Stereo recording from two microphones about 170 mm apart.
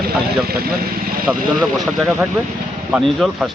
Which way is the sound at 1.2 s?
5° right (ahead or behind).